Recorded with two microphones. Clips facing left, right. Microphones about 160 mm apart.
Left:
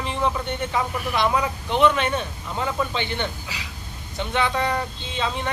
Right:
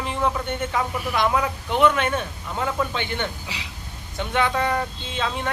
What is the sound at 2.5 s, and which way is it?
Speech, centre (ahead or behind).